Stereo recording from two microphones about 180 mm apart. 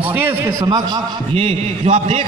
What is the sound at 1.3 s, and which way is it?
Speech, 35° right (ahead or behind).